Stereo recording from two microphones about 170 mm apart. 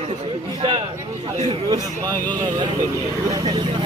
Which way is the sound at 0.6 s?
30° right (ahead or behind).